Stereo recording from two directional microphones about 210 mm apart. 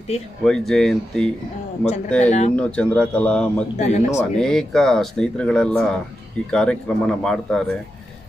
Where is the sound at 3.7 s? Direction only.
30° left (ahead or behind).